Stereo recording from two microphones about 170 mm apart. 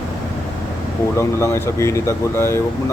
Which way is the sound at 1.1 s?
15° left (ahead or behind).